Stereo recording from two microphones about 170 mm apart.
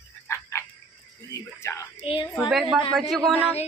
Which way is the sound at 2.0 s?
30° left (ahead or behind).